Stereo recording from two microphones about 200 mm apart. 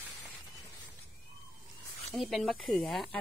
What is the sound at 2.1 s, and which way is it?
A woman's voice, centre (ahead or behind).